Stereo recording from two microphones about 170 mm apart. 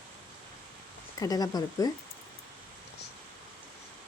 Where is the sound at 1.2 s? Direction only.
20° left (ahead or behind).